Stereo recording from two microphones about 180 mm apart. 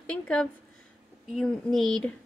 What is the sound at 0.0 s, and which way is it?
A woman's voice, 5° left (ahead or behind).